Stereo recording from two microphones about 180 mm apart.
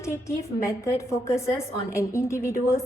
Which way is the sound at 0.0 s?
15° left (ahead or behind).